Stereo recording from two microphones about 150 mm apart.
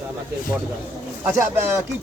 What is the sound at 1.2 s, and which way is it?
Speech, 15° right (ahead or behind).